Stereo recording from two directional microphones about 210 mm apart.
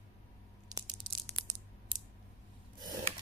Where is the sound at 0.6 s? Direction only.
20° right (ahead or behind).